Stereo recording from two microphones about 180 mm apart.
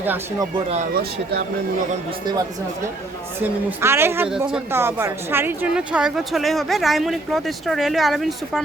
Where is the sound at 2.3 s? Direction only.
20° right (ahead or behind).